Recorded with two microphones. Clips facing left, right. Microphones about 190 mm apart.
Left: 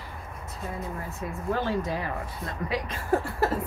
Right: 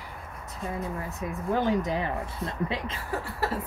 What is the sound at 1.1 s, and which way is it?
Speech, 15° right (ahead or behind).